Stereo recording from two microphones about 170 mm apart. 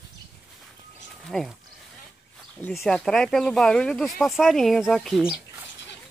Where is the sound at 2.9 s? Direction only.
5° left (ahead or behind).